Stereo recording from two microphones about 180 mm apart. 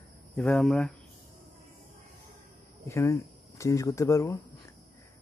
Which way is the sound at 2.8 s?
15° left (ahead or behind).